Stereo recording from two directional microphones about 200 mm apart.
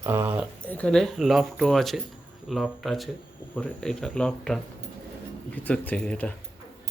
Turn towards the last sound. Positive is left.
turn(degrees=5)  # may be behind; listen again after turning